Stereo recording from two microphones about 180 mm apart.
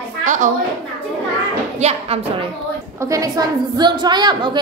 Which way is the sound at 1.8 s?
35° right (ahead or behind).